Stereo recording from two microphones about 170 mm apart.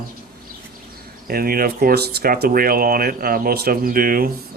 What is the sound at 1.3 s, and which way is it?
Speech, 60° right (ahead or behind).